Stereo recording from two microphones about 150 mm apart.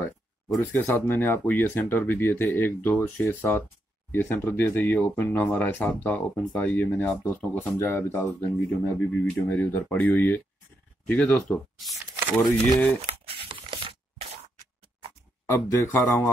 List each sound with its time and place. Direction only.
0.6 s speech: 15° left (ahead or behind)
13.3 s a sound: 35° right (ahead or behind)
15.4 s speech: 15° left (ahead or behind)